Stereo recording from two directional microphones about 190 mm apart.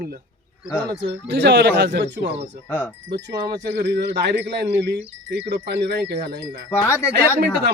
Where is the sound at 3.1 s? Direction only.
60° right (ahead or behind).